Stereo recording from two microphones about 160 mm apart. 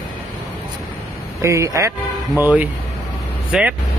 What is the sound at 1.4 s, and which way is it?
Speech, 20° right (ahead or behind).